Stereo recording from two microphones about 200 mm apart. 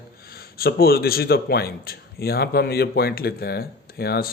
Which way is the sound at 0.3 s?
50° left (ahead or behind).